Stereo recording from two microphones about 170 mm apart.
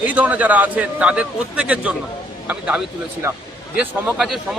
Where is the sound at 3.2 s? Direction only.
15° right (ahead or behind).